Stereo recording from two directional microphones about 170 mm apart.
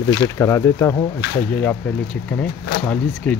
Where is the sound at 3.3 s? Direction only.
10° left (ahead or behind).